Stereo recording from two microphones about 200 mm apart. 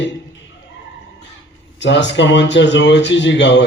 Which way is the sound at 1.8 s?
60° left (ahead or behind).